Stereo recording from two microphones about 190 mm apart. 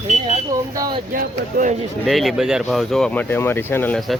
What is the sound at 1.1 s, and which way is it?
Speech, 40° right (ahead or behind).